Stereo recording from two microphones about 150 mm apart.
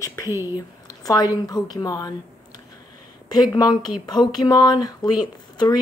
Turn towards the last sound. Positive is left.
turn(degrees=25)  # may be behind; listen again after turning